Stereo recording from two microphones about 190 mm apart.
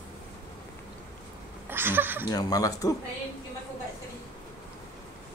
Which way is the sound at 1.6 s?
10° right (ahead or behind).